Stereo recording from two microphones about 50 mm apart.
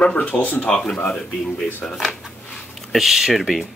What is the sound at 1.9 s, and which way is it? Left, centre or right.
Speech, centre.